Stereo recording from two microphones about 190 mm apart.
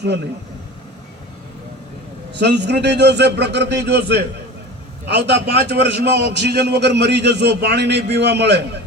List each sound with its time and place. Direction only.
2.3 s a man's voice: 65° right (ahead or behind)
5.0 s a man's voice: 65° right (ahead or behind)